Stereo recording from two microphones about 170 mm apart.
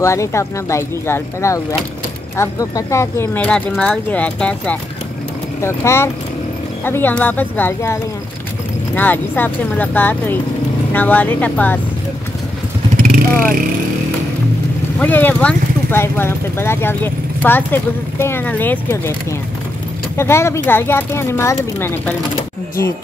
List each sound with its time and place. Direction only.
0.0 s speech: 15° left (ahead or behind)
12.9 s vehicle: 55° right (ahead or behind)
15.0 s speech: 10° left (ahead or behind)
20.2 s speech: 15° left (ahead or behind)